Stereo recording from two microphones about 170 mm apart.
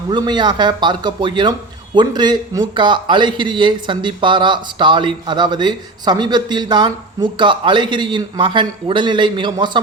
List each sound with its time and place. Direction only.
0.1 s speech: 25° right (ahead or behind)